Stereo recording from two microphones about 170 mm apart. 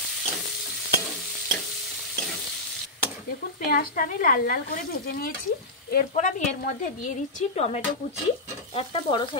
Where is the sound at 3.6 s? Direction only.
55° left (ahead or behind).